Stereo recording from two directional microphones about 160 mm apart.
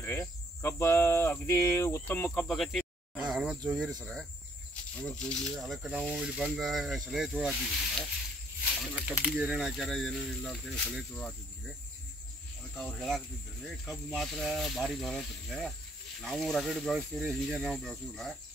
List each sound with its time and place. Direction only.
0.0 s cricket: 15° left (ahead or behind)
2.4 s a sound: centre (ahead or behind)
4.0 s speech: 5° left (ahead or behind)
12.7 s speech: centre (ahead or behind)